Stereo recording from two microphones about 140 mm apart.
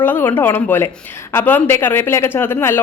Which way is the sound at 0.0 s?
15° left (ahead or behind).